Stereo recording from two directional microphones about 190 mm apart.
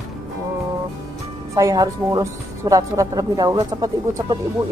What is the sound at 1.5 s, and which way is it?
Speech, 20° right (ahead or behind).